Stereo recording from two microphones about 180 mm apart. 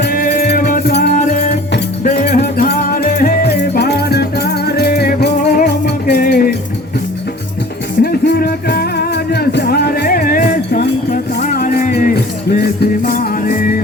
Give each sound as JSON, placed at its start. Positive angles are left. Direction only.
{"t": 0.0, "sound": "music", "side_deg": 60}
{"t": 1.2, "sound": "music", "side_deg": 40}
{"t": 8.0, "sound": "music", "side_deg": 60}
{"t": 12.1, "sound": "music", "side_deg": 60}